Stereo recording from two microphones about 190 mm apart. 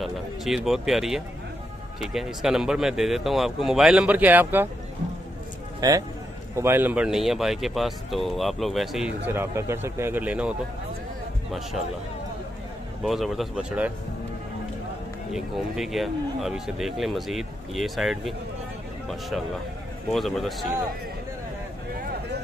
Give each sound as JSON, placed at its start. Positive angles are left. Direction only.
{"t": 0.0, "sound": "speech", "side_deg": 0}
{"t": 5.8, "sound": "speech", "side_deg": -20}
{"t": 13.0, "sound": "speech", "side_deg": 0}
{"t": 15.3, "sound": "speech", "side_deg": 0}
{"t": 20.1, "sound": "speech", "side_deg": 0}